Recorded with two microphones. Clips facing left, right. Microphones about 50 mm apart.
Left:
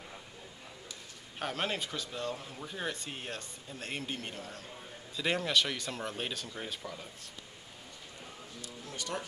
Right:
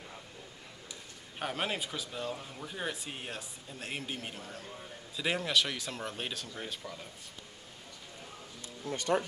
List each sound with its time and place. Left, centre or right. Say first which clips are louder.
1.4 s speech: even; centre
8.5 s speech: right 5 dB; right